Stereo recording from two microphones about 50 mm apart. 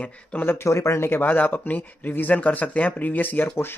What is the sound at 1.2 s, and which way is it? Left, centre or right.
Speech, left.